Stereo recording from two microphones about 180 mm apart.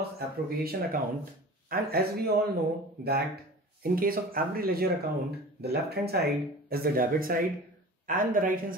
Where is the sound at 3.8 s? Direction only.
55° right (ahead or behind).